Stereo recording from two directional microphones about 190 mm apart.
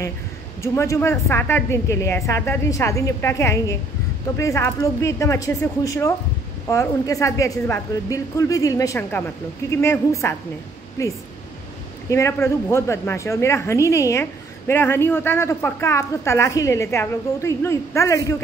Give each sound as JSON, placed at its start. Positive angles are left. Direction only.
{"t": 0.6, "sound": "a woman's voice", "side_deg": 15}